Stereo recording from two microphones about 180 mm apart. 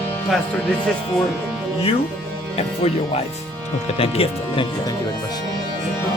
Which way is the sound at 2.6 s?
35° left (ahead or behind).